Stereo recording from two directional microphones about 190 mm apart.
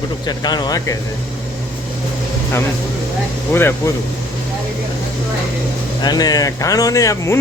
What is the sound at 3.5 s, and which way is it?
Speech, 15° left (ahead or behind).